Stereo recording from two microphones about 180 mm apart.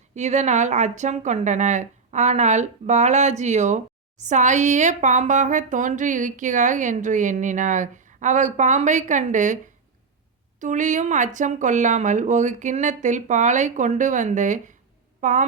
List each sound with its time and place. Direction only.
0.1 s speech: 40° right (ahead or behind)
10.6 s a woman's voice: 45° right (ahead or behind)